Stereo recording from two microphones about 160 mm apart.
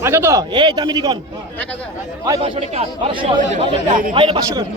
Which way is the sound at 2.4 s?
40° right (ahead or behind).